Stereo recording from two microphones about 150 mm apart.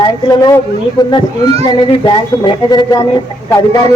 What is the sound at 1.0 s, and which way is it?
A man's voice, 25° left (ahead or behind).